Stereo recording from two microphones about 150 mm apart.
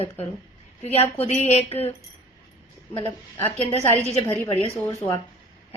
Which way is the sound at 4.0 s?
45° left (ahead or behind).